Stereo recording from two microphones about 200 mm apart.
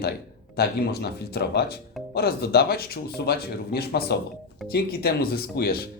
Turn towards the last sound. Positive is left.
turn(degrees=50)  # may be behind; listen again after turning